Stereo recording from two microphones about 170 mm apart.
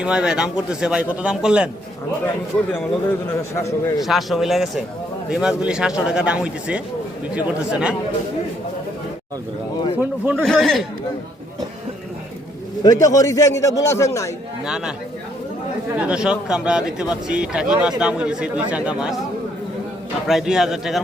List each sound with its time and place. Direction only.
0.0 s speech: 5° right (ahead or behind)
2.7 s a man's voice: 15° left (ahead or behind)
4.0 s speech: centre (ahead or behind)
10.0 s speech: 10° right (ahead or behind)
10.4 s speech: 5° left (ahead or behind)
12.8 s a man's voice: 20° left (ahead or behind)
14.6 s speech: 5° right (ahead or behind)
16.0 s speech: 5° right (ahead or behind)
20.2 s speech: centre (ahead or behind)